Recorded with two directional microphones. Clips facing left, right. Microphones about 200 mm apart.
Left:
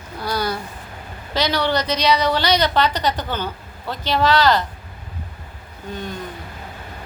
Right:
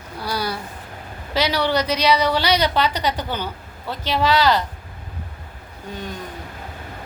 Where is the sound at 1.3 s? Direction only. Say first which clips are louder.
Even; 10° right (ahead or behind).